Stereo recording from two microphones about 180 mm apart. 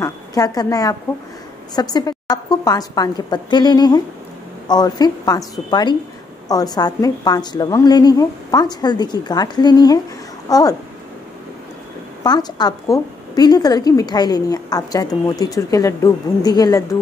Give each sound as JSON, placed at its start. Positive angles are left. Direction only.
{"t": 0.0, "sound": "a woman's voice", "side_deg": 20}
{"t": 12.2, "sound": "a woman's voice", "side_deg": 20}